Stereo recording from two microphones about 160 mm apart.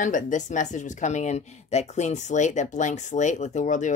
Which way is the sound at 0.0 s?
50° left (ahead or behind).